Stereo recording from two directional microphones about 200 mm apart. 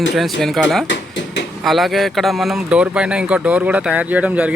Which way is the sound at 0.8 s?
65° left (ahead or behind).